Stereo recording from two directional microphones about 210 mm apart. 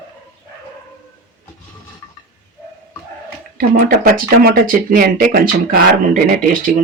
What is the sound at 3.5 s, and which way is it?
Speech, 45° right (ahead or behind).